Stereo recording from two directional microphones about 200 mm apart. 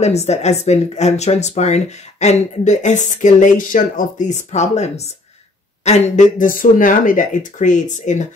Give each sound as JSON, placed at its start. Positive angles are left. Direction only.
{"t": 0.0, "sound": "a woman's voice", "side_deg": 35}